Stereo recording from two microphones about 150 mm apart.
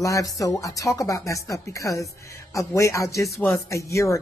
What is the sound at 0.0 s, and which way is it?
Speech, 20° left (ahead or behind).